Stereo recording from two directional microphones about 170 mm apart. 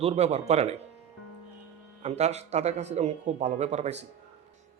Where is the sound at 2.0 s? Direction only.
40° right (ahead or behind).